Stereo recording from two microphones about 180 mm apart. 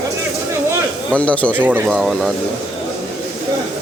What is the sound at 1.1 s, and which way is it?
Speech, 5° left (ahead or behind).